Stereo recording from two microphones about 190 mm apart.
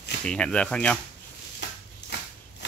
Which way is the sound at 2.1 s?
65° left (ahead or behind).